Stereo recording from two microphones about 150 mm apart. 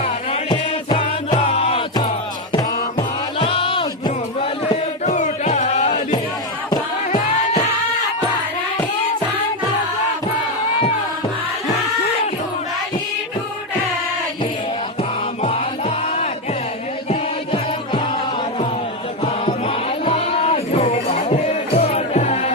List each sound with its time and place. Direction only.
0.5 s music: 30° left (ahead or behind)
3.3 s music: 35° left (ahead or behind)
5.0 s music: 55° left (ahead or behind)
17.1 s music: 35° left (ahead or behind)
19.2 s music: 40° left (ahead or behind)